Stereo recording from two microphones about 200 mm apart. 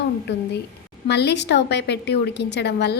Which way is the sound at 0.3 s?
60° left (ahead or behind).